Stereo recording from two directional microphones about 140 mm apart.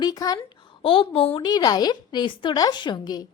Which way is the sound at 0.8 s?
40° left (ahead or behind).